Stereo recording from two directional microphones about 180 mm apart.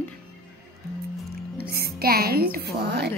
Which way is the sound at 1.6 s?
60° right (ahead or behind).